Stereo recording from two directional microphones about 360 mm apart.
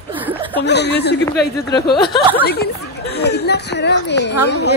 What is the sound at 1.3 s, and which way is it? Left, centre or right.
Speech, centre.